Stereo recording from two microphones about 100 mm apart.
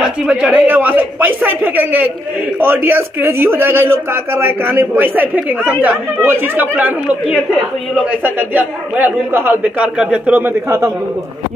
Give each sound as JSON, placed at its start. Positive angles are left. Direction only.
{"t": 0.0, "sound": "speech", "side_deg": -5}
{"t": 0.7, "sound": "a man's voice", "side_deg": -20}